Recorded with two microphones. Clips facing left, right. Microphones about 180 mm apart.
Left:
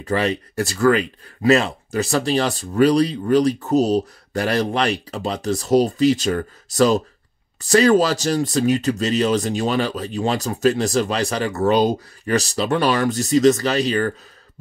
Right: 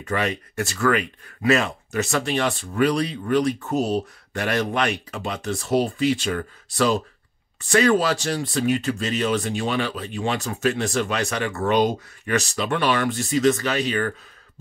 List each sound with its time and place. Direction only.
0.0 s speech: 35° left (ahead or behind)